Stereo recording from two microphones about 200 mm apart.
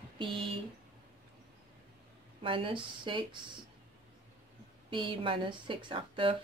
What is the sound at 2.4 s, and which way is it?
Speech, 25° right (ahead or behind).